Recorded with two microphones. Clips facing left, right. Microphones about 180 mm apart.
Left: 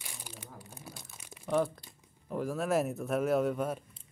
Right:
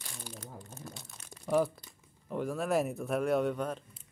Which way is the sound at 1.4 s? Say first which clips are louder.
Right 1 dB; 5° right (ahead or behind).